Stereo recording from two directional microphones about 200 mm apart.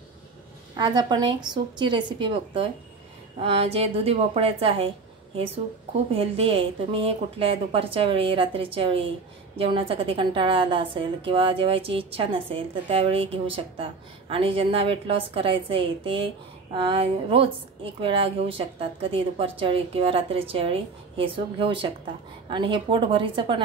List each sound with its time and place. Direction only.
0.7 s a woman's voice: 20° right (ahead or behind)
6.1 s a woman's voice: 30° right (ahead or behind)